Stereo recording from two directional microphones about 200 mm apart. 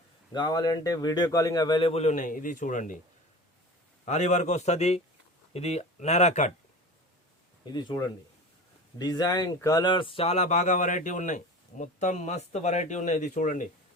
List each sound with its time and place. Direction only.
0.3 s speech: 20° left (ahead or behind); by 3.0 s 40° left (ahead or behind)
4.0 s speech: 35° left (ahead or behind)
7.6 s speech: 20° left (ahead or behind); by 13.7 s 40° left (ahead or behind)